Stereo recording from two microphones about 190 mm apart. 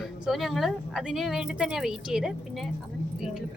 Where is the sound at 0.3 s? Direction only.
Centre (ahead or behind).